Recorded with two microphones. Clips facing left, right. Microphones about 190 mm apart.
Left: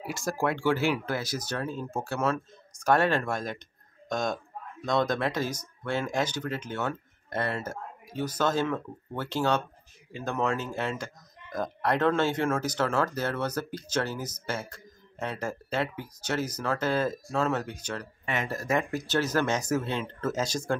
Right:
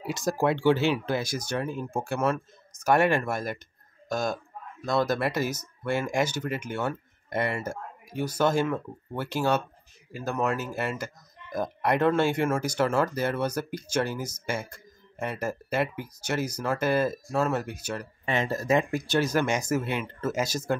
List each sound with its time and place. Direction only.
0.0 s a man's voice: 20° right (ahead or behind)
18.2 s speech: 30° right (ahead or behind); by 20.7 s 10° right (ahead or behind)